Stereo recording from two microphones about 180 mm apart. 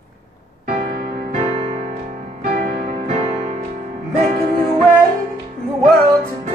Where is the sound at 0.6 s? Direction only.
45° right (ahead or behind).